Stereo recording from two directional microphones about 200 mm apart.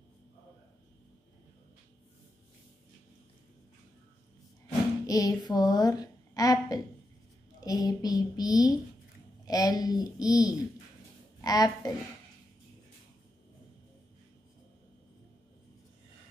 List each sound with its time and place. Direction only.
5.0 s a woman's voice: 20° left (ahead or behind)
7.6 s child singing: 20° left (ahead or behind)